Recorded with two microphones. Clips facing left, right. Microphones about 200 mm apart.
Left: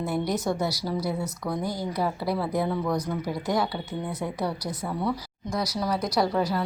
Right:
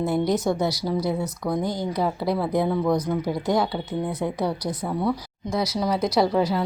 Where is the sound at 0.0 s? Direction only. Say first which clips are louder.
Right 5 dB; 25° right (ahead or behind).